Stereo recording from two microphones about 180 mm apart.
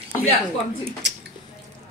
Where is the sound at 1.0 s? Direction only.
75° right (ahead or behind).